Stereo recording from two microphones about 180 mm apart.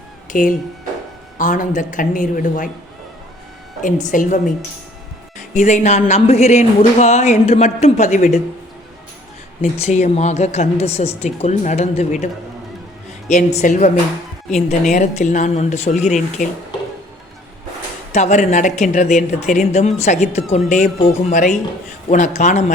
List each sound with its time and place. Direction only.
0.3 s a woman's voice: 50° left (ahead or behind)
3.8 s a woman's voice: 45° left (ahead or behind)
5.5 s speech: 40° left (ahead or behind)
9.6 s speech: 40° left (ahead or behind)
18.1 s speech: 40° left (ahead or behind)